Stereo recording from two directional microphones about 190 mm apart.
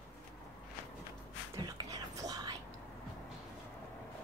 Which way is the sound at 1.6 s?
20° right (ahead or behind).